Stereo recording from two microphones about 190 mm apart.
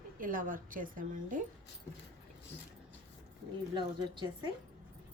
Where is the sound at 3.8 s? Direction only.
25° right (ahead or behind).